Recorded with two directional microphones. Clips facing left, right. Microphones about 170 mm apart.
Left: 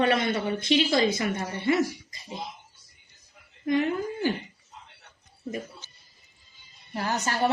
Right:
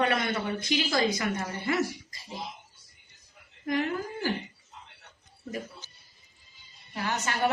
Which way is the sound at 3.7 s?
25° left (ahead or behind).